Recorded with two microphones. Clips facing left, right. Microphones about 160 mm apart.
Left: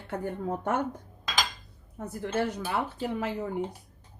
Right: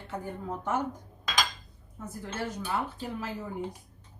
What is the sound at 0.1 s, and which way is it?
Speech, 60° left (ahead or behind).